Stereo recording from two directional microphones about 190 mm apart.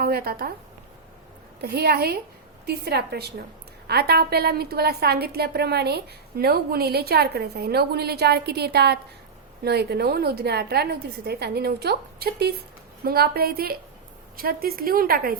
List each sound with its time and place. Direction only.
0.0 s a woman's voice: 50° right (ahead or behind)
1.6 s a woman's voice: 55° right (ahead or behind)